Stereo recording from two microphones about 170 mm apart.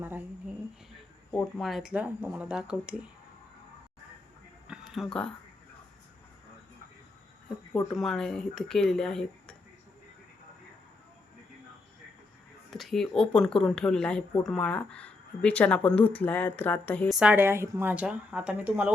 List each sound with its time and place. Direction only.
0.0 s a woman's voice: 10° right (ahead or behind)
1.3 s speech: 5° left (ahead or behind)
4.7 s a sound: centre (ahead or behind)
7.7 s speech: 15° left (ahead or behind)
7.9 s speech: centre (ahead or behind)
12.7 s speech: centre (ahead or behind)
17.2 s a woman's voice: 10° right (ahead or behind)